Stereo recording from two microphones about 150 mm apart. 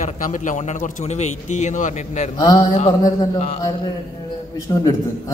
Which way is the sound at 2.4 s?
25° left (ahead or behind).